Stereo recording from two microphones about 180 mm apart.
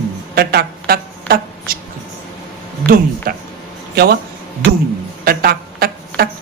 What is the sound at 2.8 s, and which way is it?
Speech, 55° right (ahead or behind).